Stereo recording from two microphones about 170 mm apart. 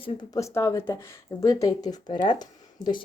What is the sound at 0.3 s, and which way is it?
Speech, 20° left (ahead or behind).